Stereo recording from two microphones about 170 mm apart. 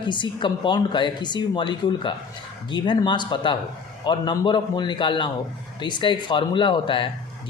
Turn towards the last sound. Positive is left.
turn(degrees=30)  # may be behind; listen again after turning